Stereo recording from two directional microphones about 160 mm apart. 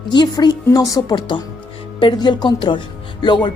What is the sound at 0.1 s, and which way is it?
A woman's voice, 25° left (ahead or behind).